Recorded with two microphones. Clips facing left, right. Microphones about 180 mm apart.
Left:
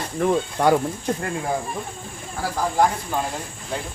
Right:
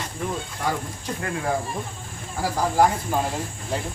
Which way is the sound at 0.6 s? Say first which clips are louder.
Left 9 dB; 70° left (ahead or behind).